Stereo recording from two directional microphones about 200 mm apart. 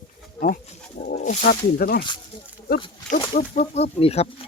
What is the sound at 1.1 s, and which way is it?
Speech, 35° left (ahead or behind).